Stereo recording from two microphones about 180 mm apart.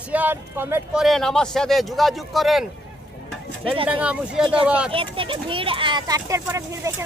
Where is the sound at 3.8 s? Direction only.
5° right (ahead or behind).